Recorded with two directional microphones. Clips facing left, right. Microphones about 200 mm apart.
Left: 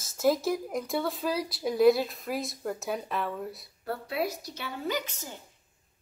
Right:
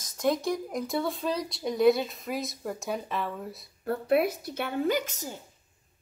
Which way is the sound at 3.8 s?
55° right (ahead or behind).